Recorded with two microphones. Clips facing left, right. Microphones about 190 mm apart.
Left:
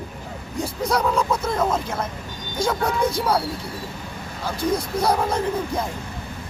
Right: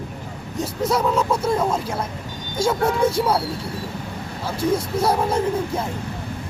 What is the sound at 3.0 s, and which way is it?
Speech, 25° right (ahead or behind).